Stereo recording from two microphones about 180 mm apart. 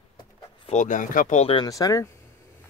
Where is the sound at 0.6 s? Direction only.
45° left (ahead or behind).